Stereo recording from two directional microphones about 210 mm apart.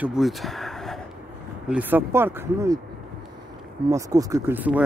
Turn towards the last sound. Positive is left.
turn(degrees=-10)  # may be behind; listen again after turning